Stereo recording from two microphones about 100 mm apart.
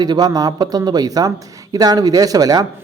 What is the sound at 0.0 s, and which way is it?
A man's voice, 45° right (ahead or behind).